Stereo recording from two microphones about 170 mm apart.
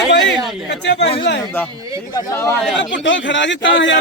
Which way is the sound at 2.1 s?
20° left (ahead or behind).